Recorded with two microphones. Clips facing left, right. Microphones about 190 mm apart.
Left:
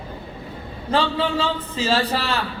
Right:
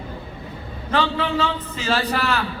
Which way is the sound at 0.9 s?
30° left (ahead or behind).